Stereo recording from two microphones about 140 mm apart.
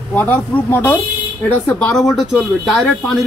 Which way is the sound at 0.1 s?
15° left (ahead or behind).